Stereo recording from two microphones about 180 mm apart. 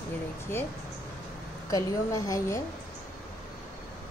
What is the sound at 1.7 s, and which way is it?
Speech, 20° left (ahead or behind).